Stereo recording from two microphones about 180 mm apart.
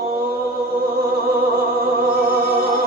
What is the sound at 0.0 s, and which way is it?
Mantra, 55° right (ahead or behind).